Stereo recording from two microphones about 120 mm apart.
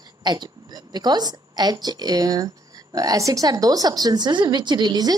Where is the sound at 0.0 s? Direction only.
35° right (ahead or behind).